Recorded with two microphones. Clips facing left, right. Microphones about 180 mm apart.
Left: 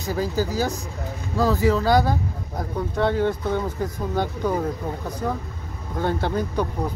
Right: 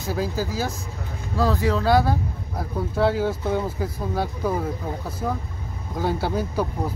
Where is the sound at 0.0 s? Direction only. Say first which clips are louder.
Left 2 dB; centre (ahead or behind).